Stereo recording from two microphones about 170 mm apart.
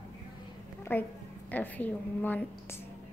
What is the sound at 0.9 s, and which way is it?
A woman's voice, 10° left (ahead or behind).